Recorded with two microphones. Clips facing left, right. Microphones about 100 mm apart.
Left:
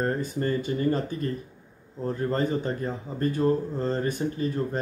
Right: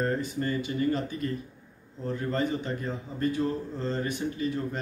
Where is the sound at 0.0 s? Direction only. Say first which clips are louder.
Left 2 dB; 40° left (ahead or behind).